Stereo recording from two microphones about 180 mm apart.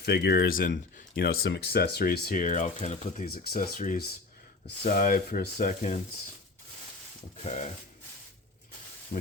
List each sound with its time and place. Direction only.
0.0 s speech: 65° left (ahead or behind); by 6.0 s 45° left (ahead or behind)